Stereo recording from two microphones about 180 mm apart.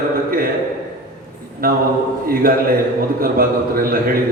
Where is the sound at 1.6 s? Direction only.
55° right (ahead or behind).